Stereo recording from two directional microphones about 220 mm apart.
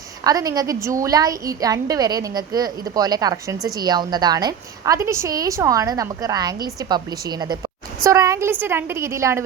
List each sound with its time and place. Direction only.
0.3 s a woman's voice: 15° right (ahead or behind)